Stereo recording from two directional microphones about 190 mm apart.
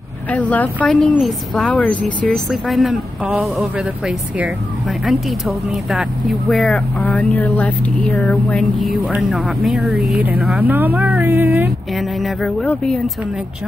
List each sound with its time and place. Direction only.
0.3 s speech: 10° left (ahead or behind)
6.5 s speech: centre (ahead or behind)
10.7 s a sound: 10° right (ahead or behind)
12.2 s speech: centre (ahead or behind)